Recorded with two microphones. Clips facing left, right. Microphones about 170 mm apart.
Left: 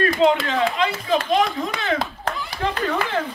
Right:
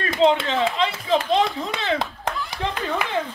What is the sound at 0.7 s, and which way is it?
Clapping, 25° right (ahead or behind).